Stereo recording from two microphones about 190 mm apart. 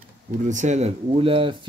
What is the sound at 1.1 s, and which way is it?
Speech, 25° right (ahead or behind).